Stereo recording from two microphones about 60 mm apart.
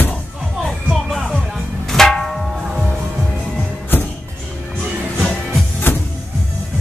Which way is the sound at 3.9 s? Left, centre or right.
Left.